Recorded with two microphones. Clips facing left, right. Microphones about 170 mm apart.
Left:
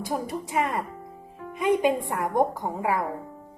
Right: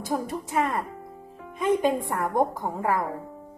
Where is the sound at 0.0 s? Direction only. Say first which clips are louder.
Right 1 dB; 15° left (ahead or behind).